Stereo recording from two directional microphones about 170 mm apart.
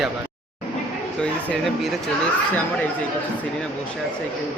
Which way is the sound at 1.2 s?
5° left (ahead or behind).